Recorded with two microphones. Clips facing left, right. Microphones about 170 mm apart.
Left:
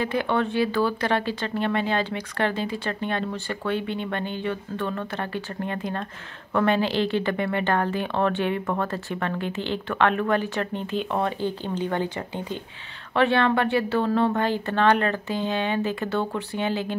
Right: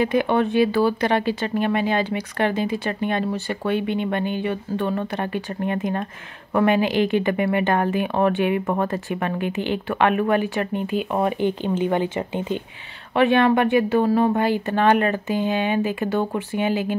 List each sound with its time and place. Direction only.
0.0 s speech: 15° right (ahead or behind)